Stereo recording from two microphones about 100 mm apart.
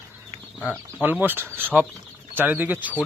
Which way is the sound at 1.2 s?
20° right (ahead or behind).